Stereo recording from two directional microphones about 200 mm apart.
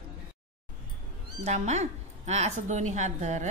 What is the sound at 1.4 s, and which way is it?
A woman's voice, 35° right (ahead or behind).